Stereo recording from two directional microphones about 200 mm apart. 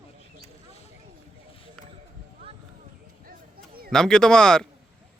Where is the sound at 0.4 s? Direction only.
30° left (ahead or behind).